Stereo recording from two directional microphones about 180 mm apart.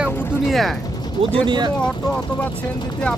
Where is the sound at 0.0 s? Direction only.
Centre (ahead or behind).